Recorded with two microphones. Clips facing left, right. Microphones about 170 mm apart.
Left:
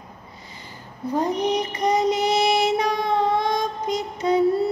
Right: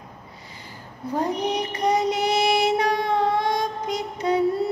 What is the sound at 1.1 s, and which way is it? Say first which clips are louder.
Speech: left 2 dB; 10° right (ahead or behind).